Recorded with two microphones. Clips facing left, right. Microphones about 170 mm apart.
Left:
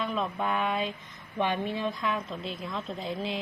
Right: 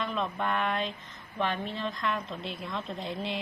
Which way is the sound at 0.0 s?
5° left (ahead or behind).